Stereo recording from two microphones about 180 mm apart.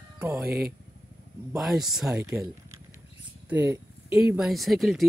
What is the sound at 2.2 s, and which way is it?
Speech, 15° right (ahead or behind).